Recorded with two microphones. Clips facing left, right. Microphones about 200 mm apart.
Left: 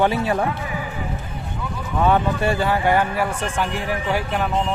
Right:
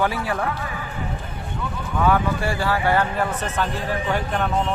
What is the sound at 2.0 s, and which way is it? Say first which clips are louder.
Speech: left 2 dB; 25° left (ahead or behind).